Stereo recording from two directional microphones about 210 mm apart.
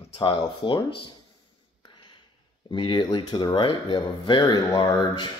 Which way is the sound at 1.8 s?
20° left (ahead or behind).